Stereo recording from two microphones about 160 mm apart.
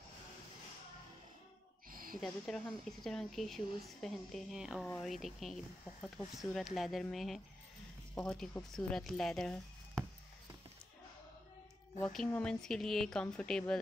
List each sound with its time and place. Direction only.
1.9 s a sound: 60° right (ahead or behind)
2.1 s a woman's voice: centre (ahead or behind)
12.3 s a woman's voice: 5° left (ahead or behind)